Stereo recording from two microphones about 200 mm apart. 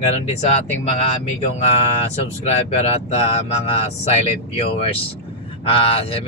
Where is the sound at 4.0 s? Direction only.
30° left (ahead or behind).